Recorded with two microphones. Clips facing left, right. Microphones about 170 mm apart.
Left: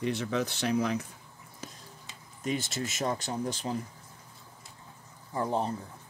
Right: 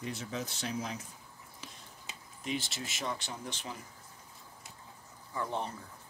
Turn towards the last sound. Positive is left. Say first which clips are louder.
# left 6 dB
turn(degrees=35)  # may be behind; listen again after turning